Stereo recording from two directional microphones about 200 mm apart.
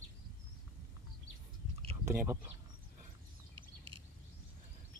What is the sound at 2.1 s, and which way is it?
Speech, 10° right (ahead or behind).